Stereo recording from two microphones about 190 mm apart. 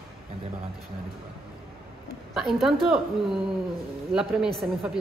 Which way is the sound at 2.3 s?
Centre (ahead or behind).